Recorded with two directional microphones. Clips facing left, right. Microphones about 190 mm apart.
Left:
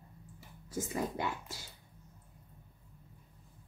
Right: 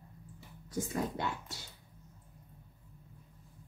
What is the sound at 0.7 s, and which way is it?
Speech, 10° left (ahead or behind).